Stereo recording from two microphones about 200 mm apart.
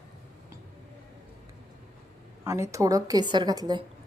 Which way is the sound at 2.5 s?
15° right (ahead or behind).